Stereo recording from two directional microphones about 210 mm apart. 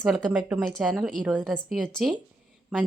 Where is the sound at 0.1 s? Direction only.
5° right (ahead or behind).